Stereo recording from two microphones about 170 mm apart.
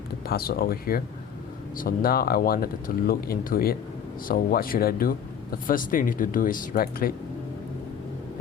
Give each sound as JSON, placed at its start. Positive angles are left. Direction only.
{"t": 0.3, "sound": "speech", "side_deg": 65}